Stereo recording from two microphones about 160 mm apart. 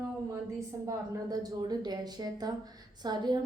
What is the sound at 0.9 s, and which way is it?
A woman's voice, 25° right (ahead or behind).